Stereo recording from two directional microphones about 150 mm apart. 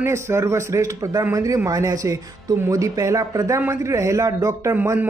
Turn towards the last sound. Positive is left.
turn(degrees=-15)  # may be behind; listen again after turning